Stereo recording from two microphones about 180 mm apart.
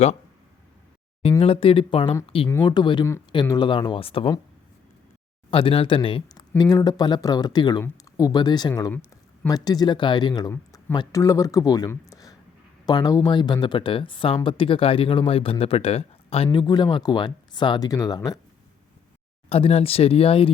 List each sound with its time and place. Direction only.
1.4 s speech: 30° left (ahead or behind)
5.5 s speech: 30° left (ahead or behind)
8.9 s a sound: 10° left (ahead or behind)
9.5 s speech: 20° left (ahead or behind)
19.5 s speech: 35° left (ahead or behind)